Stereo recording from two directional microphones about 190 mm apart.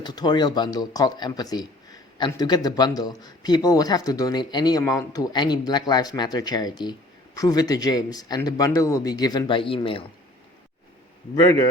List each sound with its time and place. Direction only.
0.0 s speech: 25° left (ahead or behind)
11.3 s speech: 25° left (ahead or behind)